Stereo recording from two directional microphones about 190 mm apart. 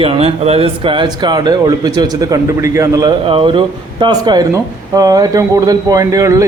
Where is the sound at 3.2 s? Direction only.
30° right (ahead or behind).